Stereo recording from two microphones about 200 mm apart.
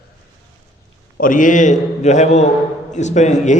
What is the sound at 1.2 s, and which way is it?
A man's voice, 40° left (ahead or behind).